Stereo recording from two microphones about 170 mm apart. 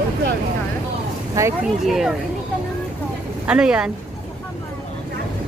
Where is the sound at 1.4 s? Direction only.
20° right (ahead or behind).